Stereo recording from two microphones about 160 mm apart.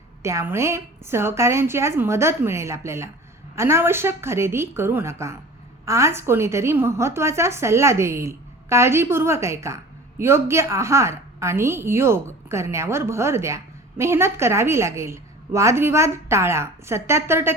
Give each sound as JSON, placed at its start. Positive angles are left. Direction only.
{"t": 0.2, "sound": "a woman's voice", "side_deg": -15}